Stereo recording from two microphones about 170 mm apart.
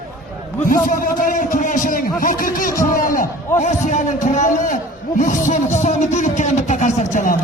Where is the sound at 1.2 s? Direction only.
50° left (ahead or behind).